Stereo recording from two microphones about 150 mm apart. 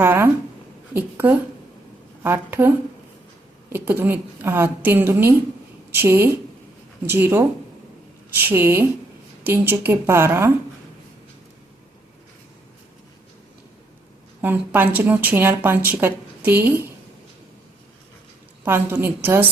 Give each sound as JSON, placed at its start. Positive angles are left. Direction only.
{"t": 0.0, "sound": "a sound", "side_deg": -15}
{"t": 0.9, "sound": "speech", "side_deg": -15}
{"t": 14.4, "sound": "speech", "side_deg": -10}
{"t": 18.6, "sound": "speech", "side_deg": -15}